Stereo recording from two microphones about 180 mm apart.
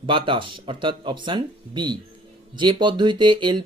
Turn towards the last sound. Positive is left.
turn(degrees=-25)  # may be behind; listen again after turning